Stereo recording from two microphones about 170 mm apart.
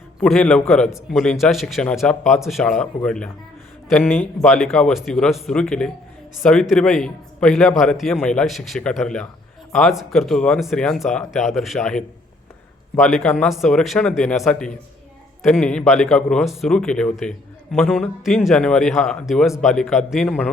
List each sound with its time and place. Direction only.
0.2 s a man's voice: 5° left (ahead or behind)